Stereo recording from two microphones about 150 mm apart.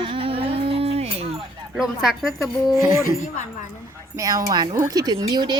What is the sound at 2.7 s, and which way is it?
Speech, 20° right (ahead or behind).